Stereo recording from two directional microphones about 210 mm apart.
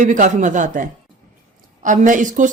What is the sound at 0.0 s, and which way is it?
Speech, 35° right (ahead or behind).